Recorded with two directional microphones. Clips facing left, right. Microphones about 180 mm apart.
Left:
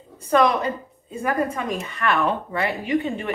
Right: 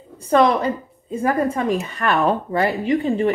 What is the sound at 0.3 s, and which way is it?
Speech, 30° right (ahead or behind).